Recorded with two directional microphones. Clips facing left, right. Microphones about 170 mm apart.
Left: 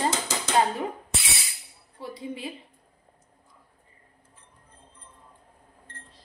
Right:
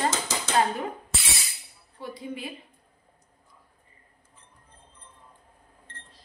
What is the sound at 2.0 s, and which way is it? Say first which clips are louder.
Speech: left 1 dB; 30° left (ahead or behind).